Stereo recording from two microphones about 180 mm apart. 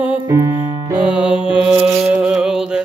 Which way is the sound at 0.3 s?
20° right (ahead or behind).